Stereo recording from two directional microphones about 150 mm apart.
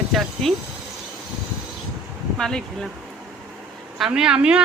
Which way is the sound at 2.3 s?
5° left (ahead or behind).